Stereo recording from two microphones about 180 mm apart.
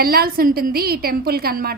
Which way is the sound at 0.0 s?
55° right (ahead or behind).